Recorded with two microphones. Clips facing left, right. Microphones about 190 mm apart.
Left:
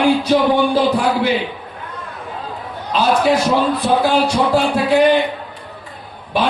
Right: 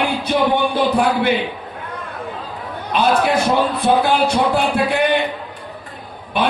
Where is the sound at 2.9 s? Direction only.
55° right (ahead or behind).